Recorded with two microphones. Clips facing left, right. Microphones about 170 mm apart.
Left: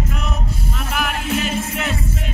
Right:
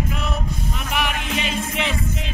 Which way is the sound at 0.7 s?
Centre (ahead or behind).